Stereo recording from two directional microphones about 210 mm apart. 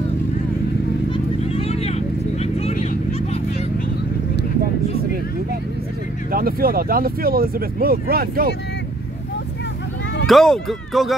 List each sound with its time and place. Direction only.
1.1 s vehicle: 30° left (ahead or behind)
6.3 s speech: 45° right (ahead or behind)
10.2 s speech: centre (ahead or behind)